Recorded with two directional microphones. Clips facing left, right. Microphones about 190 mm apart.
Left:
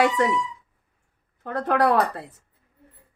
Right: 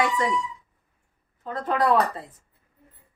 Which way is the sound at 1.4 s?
70° left (ahead or behind).